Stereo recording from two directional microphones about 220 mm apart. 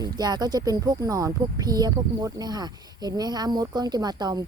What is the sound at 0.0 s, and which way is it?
Speech, 20° right (ahead or behind).